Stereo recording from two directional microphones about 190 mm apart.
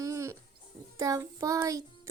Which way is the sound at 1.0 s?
15° right (ahead or behind).